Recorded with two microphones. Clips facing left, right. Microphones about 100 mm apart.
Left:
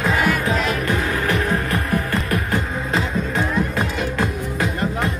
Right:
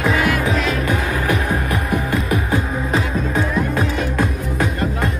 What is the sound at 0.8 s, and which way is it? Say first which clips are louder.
Music: right 1 dB; 10° right (ahead or behind).